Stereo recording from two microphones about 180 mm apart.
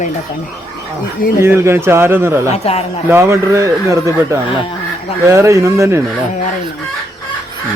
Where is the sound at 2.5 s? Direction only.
35° left (ahead or behind).